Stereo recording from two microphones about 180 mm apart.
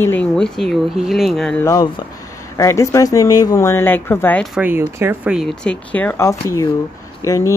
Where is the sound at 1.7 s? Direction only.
20° left (ahead or behind).